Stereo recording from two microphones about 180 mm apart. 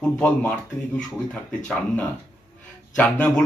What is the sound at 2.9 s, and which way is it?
Speech, 10° left (ahead or behind).